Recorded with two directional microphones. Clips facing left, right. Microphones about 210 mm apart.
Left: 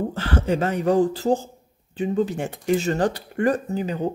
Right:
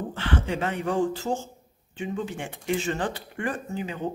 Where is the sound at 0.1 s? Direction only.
40° left (ahead or behind).